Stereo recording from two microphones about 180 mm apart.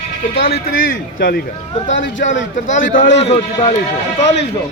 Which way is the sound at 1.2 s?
60° left (ahead or behind).